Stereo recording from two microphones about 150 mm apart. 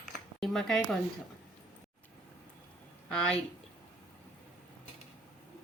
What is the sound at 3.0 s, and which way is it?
Speech, 5° left (ahead or behind).